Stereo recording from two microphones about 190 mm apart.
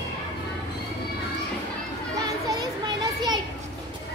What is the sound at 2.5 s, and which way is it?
Children playing, 20° right (ahead or behind).